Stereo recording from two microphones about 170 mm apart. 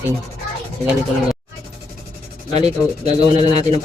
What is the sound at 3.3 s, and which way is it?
Speech, 35° right (ahead or behind).